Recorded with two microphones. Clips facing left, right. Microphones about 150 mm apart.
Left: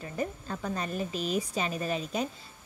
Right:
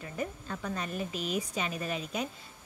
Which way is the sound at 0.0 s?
35° left (ahead or behind).